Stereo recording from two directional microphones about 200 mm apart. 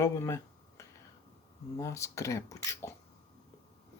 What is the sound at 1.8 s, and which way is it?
Speech, 15° left (ahead or behind).